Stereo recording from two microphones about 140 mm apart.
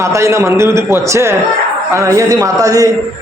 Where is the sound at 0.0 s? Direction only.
20° right (ahead or behind).